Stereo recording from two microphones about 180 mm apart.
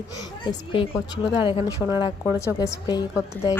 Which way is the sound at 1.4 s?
25° left (ahead or behind).